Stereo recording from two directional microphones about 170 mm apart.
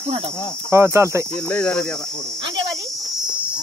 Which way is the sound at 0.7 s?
15° right (ahead or behind).